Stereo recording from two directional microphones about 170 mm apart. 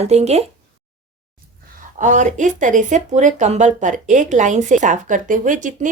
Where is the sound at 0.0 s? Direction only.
40° right (ahead or behind).